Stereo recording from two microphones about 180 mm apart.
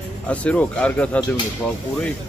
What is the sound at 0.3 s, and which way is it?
Speech, 5° left (ahead or behind).